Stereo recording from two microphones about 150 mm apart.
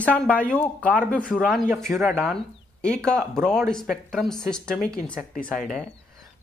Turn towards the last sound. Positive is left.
turn(degrees=5)  # may be behind; listen again after turning